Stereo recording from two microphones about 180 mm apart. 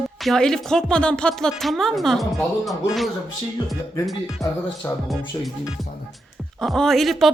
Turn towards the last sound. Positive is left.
turn(degrees=0)  # may be behind; listen again after turning